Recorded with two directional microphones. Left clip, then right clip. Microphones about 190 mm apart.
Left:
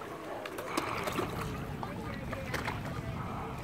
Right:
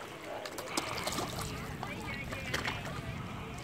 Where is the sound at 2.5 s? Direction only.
40° right (ahead or behind).